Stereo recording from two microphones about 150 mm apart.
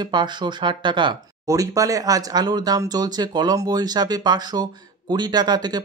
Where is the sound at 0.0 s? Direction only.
30° right (ahead or behind).